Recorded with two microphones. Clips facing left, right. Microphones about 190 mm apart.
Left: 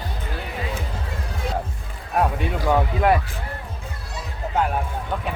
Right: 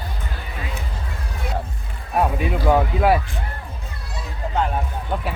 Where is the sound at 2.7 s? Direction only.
5° right (ahead or behind).